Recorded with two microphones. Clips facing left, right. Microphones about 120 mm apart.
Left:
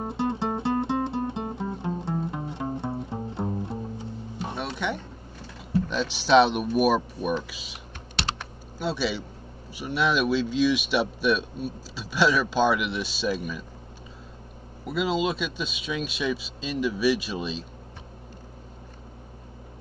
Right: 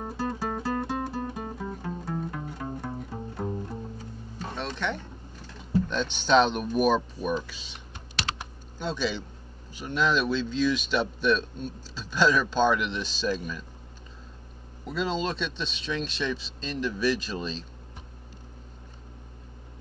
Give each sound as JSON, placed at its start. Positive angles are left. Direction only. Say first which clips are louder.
{"t": 0.0, "sound": "music", "louder": "left 4 dB", "side_deg": 25}
{"t": 5.9, "sound": "speech", "louder": "left 4 dB", "side_deg": 5}
{"t": 14.9, "sound": "speech", "louder": "left 3 dB", "side_deg": 10}